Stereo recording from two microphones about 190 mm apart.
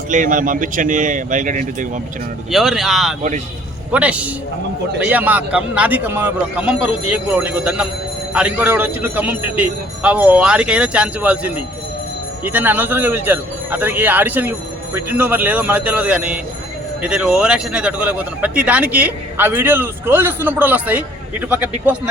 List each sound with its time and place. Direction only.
0.1 s speech: 45° right (ahead or behind)
2.5 s speech: centre (ahead or behind)